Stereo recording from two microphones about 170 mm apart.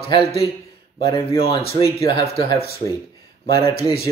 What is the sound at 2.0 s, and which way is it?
Speech, 35° left (ahead or behind).